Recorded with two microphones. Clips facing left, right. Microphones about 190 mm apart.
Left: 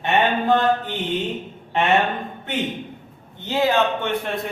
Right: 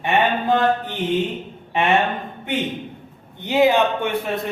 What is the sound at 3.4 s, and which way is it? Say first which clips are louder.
Speech: right 3 dB; 15° right (ahead or behind).